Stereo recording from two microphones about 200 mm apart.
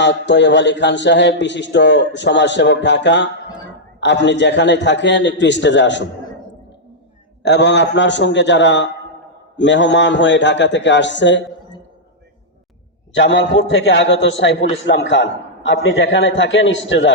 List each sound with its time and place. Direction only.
0.0 s a man's voice: 60° left (ahead or behind)
7.4 s a man's voice: 60° left (ahead or behind)
13.1 s a man's voice: 65° left (ahead or behind)